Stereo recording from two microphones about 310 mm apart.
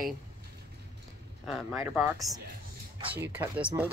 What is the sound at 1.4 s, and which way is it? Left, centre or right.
Speech, centre.